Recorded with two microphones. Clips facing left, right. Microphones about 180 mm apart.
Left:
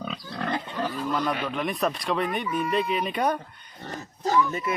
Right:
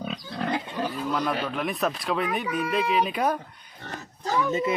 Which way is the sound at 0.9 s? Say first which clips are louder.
Even; centre (ahead or behind).